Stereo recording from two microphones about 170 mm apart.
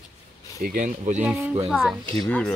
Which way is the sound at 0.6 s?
50° right (ahead or behind).